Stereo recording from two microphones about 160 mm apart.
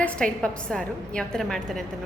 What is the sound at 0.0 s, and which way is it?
A woman's voice, 5° left (ahead or behind).